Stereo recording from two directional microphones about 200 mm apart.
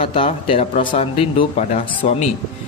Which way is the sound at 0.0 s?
25° left (ahead or behind).